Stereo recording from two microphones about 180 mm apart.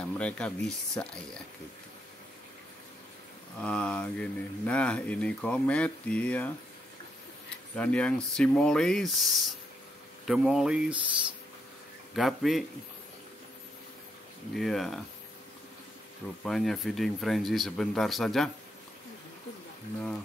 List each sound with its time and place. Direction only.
0.0 s speech: 5° left (ahead or behind)
3.6 s speech: 5° left (ahead or behind)
7.7 s speech: 5° left (ahead or behind)
12.2 s speech: centre (ahead or behind)
14.5 s speech: centre (ahead or behind)
16.4 s speech: centre (ahead or behind)